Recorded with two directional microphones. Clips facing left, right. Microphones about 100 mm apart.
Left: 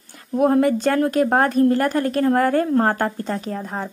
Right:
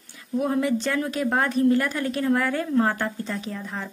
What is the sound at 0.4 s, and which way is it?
A woman's voice, 50° left (ahead or behind).